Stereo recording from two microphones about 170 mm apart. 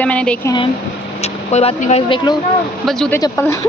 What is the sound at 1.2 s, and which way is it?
Speech, 40° left (ahead or behind).